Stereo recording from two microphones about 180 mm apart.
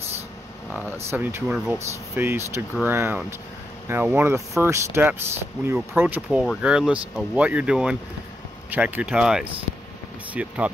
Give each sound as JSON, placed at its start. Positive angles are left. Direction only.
{"t": 0.7, "sound": "speech", "side_deg": -5}